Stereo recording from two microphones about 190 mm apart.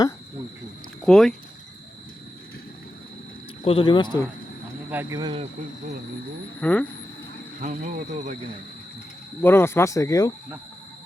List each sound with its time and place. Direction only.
1.0 s speech: 5° left (ahead or behind)
3.6 s speech: 30° left (ahead or behind)
4.9 s speech: 10° right (ahead or behind)
5.2 s speech: 25° right (ahead or behind)
6.6 s speech: 10° left (ahead or behind)
7.6 s speech: 40° right (ahead or behind)
9.4 s speech: 10° left (ahead or behind)